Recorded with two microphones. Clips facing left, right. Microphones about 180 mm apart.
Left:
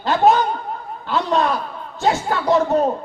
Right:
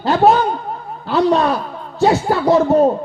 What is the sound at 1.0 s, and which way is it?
Speech, 40° right (ahead or behind).